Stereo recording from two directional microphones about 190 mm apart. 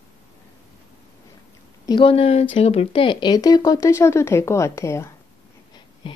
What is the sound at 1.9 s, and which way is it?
A woman's voice, 25° left (ahead or behind).